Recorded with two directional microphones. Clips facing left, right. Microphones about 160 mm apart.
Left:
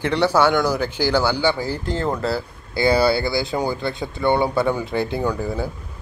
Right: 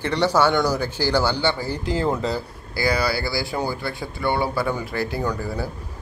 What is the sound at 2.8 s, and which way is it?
Speech, 25° left (ahead or behind).